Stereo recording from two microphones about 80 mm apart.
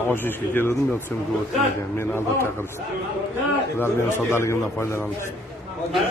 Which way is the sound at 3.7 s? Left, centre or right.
Left.